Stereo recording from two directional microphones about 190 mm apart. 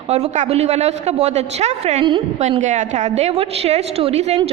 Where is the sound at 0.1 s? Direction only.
35° right (ahead or behind).